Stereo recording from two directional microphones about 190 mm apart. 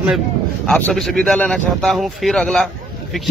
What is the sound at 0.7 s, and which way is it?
Speech, 5° left (ahead or behind).